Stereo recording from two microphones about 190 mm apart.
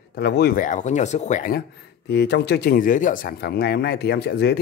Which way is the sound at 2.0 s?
60° left (ahead or behind).